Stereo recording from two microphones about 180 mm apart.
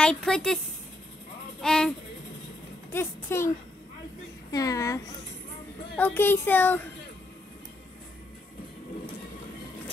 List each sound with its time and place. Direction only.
0.0 s speech: 5° left (ahead or behind)
1.6 s speech: 5° left (ahead or behind)